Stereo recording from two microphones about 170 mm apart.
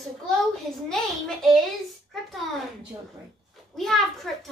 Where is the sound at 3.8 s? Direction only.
Centre (ahead or behind).